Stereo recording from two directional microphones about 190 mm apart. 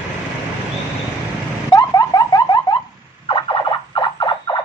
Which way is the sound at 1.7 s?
20° left (ahead or behind).